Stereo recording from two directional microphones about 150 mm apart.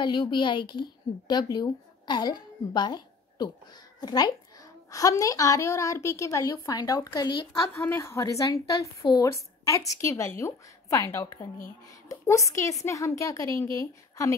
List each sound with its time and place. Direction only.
0.0 s a woman's voice: 30° left (ahead or behind)
7.7 s a woman's voice: 15° left (ahead or behind)